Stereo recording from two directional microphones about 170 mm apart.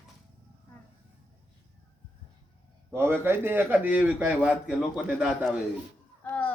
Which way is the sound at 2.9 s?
15° right (ahead or behind).